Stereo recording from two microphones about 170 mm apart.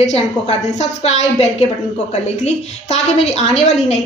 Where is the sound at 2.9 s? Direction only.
40° left (ahead or behind).